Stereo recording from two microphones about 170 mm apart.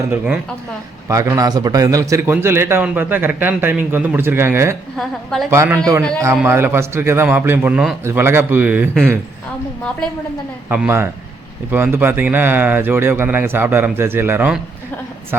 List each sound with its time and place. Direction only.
1.0 s a man's voice: 20° right (ahead or behind)
4.9 s a woman's voice: centre (ahead or behind)
5.5 s a man's voice: 15° right (ahead or behind)
10.7 s a man's voice: 10° right (ahead or behind)